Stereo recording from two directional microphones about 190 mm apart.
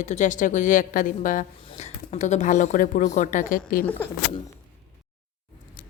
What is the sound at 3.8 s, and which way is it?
Speech, 10° left (ahead or behind).